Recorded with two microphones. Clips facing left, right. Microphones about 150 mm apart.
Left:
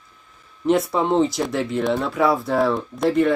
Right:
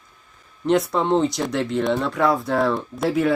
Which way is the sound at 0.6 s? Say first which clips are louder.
Even; 5° left (ahead or behind).